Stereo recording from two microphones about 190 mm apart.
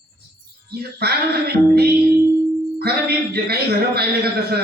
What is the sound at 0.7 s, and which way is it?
A man's voice, 55° right (ahead or behind).